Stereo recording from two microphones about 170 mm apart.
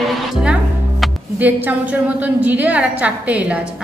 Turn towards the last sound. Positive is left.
turn(degrees=-10)  # may be behind; listen again after turning